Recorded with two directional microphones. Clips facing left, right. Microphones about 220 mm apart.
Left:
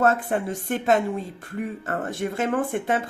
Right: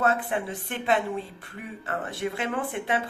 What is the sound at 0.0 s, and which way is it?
Speech, 45° left (ahead or behind).